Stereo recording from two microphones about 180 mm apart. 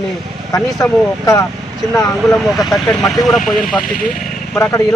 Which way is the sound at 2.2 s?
Centre (ahead or behind).